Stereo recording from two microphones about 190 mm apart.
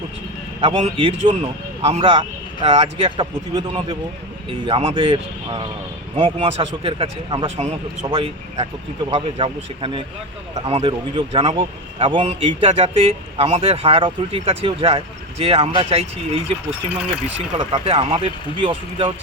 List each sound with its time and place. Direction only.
0.6 s a man's voice: 25° right (ahead or behind)
17.7 s a man's voice: 30° right (ahead or behind)